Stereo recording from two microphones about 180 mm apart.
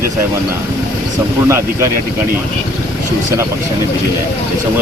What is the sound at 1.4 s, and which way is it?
Speech, 15° right (ahead or behind).